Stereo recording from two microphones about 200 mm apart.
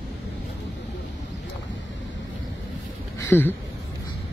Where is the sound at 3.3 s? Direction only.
10° left (ahead or behind).